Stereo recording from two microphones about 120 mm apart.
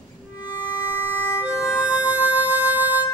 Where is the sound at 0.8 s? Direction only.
20° left (ahead or behind).